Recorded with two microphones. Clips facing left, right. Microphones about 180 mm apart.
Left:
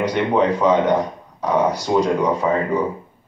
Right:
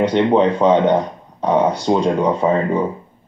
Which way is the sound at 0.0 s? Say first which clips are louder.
Right 4 dB; 25° right (ahead or behind).